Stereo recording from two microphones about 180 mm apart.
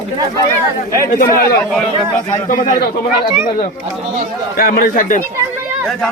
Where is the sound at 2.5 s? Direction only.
50° left (ahead or behind).